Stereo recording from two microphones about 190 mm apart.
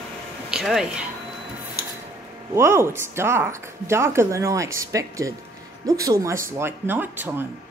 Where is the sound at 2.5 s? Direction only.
15° right (ahead or behind).